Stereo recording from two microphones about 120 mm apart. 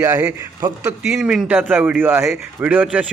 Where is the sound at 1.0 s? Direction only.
5° right (ahead or behind).